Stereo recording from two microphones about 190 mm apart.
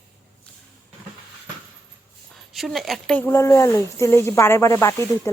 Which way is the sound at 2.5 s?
Centre (ahead or behind).